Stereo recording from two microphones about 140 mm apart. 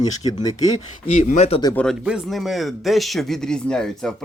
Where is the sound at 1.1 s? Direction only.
60° left (ahead or behind).